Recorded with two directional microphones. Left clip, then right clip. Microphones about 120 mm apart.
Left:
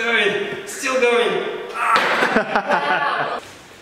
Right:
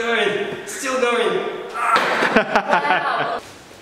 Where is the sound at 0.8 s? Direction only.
Centre (ahead or behind).